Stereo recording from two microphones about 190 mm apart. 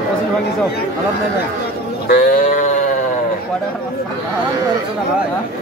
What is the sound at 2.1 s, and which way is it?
Sheep, 50° left (ahead or behind).